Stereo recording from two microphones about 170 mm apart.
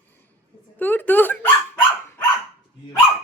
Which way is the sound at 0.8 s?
10° left (ahead or behind).